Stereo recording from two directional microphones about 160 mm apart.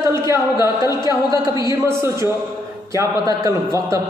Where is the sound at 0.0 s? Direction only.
20° right (ahead or behind).